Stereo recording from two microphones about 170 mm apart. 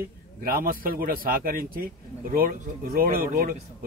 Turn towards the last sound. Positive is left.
turn(degrees=-60)  # may be behind; listen again after turning